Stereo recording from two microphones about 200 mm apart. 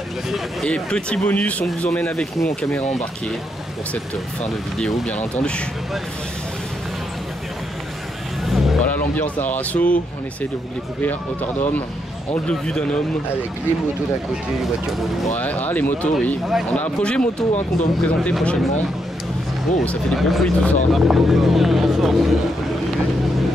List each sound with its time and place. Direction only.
0.3 s speech: centre (ahead or behind)
3.9 s speech: 5° left (ahead or behind)
8.5 s speech: centre (ahead or behind)
12.4 s speech: 5° left (ahead or behind)
15.3 s speech: 10° left (ahead or behind)
17.5 s speech: 35° left (ahead or behind)
18.0 s speech: 5° left (ahead or behind)
19.8 s speech: 5° left (ahead or behind)